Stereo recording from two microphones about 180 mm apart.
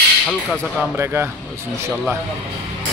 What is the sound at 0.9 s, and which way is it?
Speech, 15° right (ahead or behind).